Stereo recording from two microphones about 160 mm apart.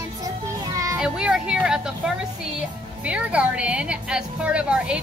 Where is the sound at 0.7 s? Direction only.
20° right (ahead or behind).